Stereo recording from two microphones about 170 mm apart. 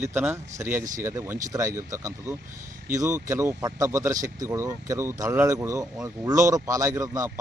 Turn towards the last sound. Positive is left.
turn(degrees=-20)  # may be behind; listen again after turning